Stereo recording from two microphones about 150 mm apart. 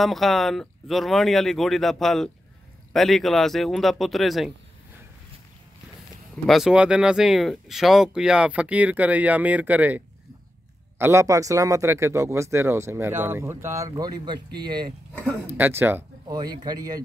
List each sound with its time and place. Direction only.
0.0 s speech: centre (ahead or behind)
6.4 s speech: centre (ahead or behind); by 14.4 s 30° right (ahead or behind)
15.4 s speech: 15° right (ahead or behind)
16.3 s speech: 25° right (ahead or behind)